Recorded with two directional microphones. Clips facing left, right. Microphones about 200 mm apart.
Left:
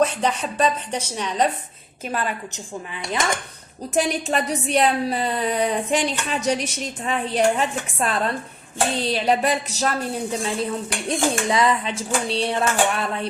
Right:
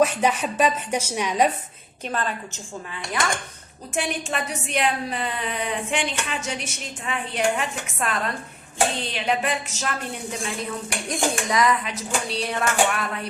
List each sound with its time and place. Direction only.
0.0 s a woman's voice: 10° right (ahead or behind)
2.0 s a woman's voice: 10° left (ahead or behind)
3.9 s a woman's voice: 35° left (ahead or behind)
10.4 s dishes: 30° left (ahead or behind)